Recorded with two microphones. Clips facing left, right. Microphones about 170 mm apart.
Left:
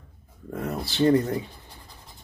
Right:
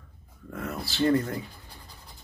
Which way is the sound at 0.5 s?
30° left (ahead or behind).